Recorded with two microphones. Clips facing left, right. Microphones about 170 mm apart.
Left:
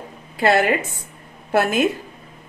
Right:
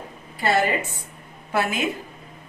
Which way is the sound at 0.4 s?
70° left (ahead or behind).